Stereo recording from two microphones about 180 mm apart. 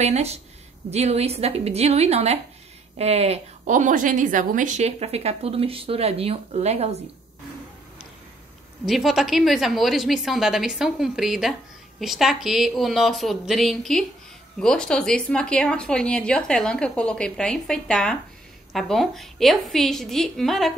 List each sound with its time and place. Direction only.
0.0 s a woman's voice: 35° right (ahead or behind)
8.8 s a woman's voice: centre (ahead or behind)